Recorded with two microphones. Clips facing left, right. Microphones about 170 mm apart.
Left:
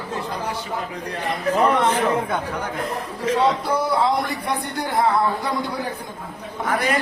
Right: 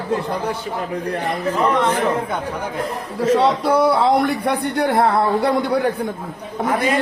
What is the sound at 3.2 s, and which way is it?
A man's voice, 70° right (ahead or behind).